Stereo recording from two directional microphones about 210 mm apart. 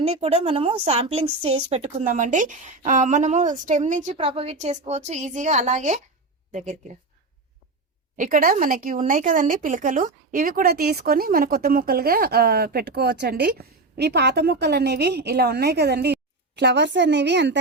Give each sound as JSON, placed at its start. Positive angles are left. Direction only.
{"t": 0.0, "sound": "a woman's voice", "side_deg": -30}
{"t": 8.2, "sound": "a woman's voice", "side_deg": -40}